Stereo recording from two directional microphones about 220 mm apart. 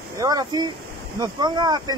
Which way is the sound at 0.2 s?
15° right (ahead or behind).